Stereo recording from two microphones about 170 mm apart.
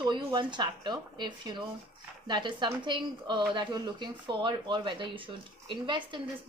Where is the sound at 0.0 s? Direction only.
25° right (ahead or behind).